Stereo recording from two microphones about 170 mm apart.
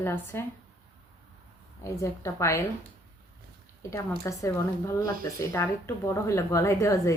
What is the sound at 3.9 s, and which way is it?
Speech, 15° left (ahead or behind).